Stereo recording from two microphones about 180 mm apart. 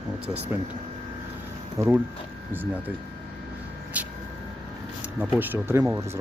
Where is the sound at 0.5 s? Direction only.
10° right (ahead or behind).